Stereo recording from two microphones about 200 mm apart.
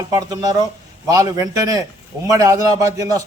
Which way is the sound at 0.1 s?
20° right (ahead or behind).